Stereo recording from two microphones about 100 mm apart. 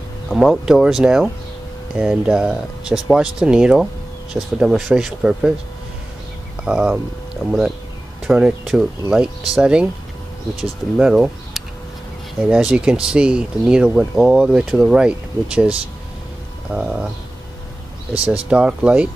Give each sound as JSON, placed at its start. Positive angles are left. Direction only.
{"t": 0.3, "sound": "speech", "side_deg": 0}
{"t": 6.6, "sound": "speech", "side_deg": -10}
{"t": 7.4, "sound": "speech", "side_deg": 0}
{"t": 16.7, "sound": "speech", "side_deg": -10}
{"t": 18.5, "sound": "speech", "side_deg": -10}